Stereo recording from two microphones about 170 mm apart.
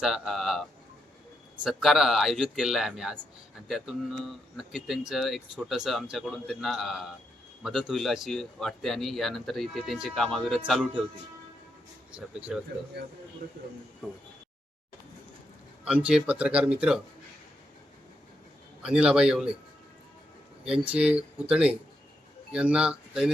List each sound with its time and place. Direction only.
0.0 s speech: centre (ahead or behind)
1.6 s speech: centre (ahead or behind)
12.1 s speech: 5° right (ahead or behind)
13.0 s speech: 75° right (ahead or behind)
15.8 s speech: 5° right (ahead or behind)
18.8 s speech: 5° right (ahead or behind)
20.8 s speech: 5° right (ahead or behind)